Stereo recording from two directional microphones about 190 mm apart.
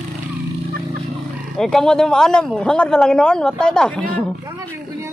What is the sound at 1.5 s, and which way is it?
Speech, centre (ahead or behind).